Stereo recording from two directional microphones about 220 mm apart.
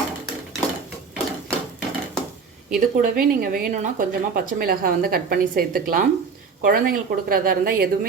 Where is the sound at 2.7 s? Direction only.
40° right (ahead or behind).